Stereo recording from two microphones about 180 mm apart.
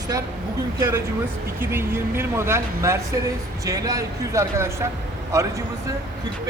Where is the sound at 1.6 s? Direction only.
15° right (ahead or behind).